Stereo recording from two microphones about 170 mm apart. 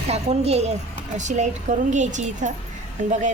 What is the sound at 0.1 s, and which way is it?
A woman's voice, 40° right (ahead or behind).